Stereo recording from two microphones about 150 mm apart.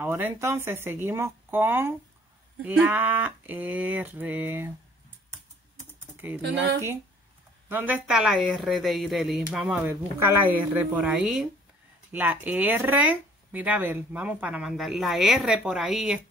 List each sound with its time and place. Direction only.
0.0 s speech: 15° right (ahead or behind)
6.2 s speech: 10° right (ahead or behind)
10.8 s speech: 10° right (ahead or behind)